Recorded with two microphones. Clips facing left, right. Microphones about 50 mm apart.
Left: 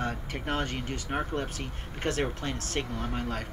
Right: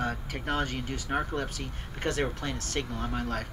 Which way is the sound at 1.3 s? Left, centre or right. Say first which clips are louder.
Even; centre.